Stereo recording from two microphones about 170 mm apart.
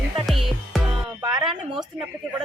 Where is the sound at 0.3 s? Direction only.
Centre (ahead or behind).